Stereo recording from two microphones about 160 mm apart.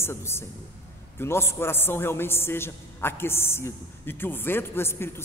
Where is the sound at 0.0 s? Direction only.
15° left (ahead or behind).